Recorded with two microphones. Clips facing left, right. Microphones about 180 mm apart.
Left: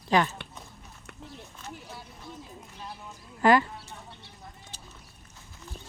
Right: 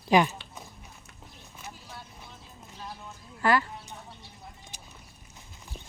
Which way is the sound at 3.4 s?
20° left (ahead or behind).